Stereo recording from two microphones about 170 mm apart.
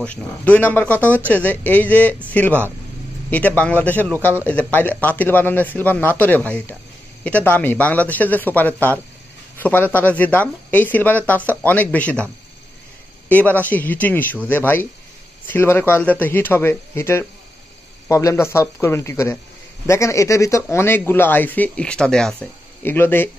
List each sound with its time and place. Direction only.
0.0 s speech: 10° left (ahead or behind)
13.3 s speech: 10° left (ahead or behind)